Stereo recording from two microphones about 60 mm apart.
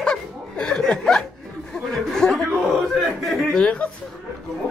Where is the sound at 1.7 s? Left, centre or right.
Centre.